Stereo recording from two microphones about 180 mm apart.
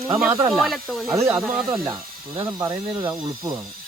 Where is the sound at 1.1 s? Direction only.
15° right (ahead or behind).